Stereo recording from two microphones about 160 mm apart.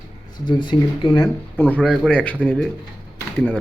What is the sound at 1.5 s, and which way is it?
Speech, 10° left (ahead or behind).